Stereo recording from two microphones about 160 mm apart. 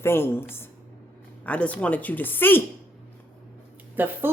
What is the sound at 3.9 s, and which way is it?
Speech, 10° right (ahead or behind).